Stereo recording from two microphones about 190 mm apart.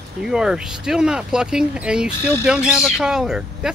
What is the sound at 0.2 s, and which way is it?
Speech, 5° right (ahead or behind).